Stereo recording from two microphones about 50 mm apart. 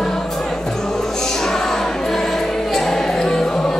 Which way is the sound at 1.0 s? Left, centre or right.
Centre.